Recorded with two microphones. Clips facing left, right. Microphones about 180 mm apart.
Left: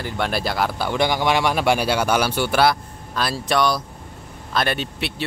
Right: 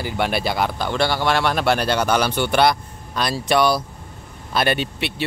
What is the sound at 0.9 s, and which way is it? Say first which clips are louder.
Speech: left 1 dB; 15° left (ahead or behind).